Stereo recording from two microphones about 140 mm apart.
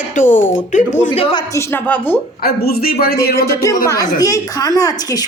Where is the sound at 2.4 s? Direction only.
90° left.